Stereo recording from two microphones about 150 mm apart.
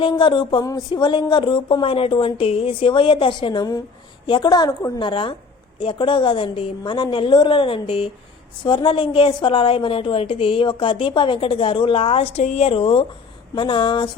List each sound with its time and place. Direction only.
0.0 s a woman's voice: 35° left (ahead or behind)